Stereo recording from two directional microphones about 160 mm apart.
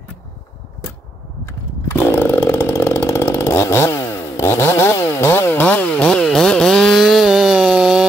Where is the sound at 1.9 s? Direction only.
10° left (ahead or behind).